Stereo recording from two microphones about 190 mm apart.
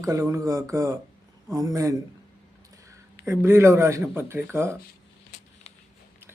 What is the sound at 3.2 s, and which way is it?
Speech, 15° right (ahead or behind).